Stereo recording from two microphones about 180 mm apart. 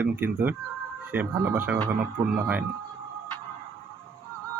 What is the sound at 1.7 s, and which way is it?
Speech, 20° right (ahead or behind).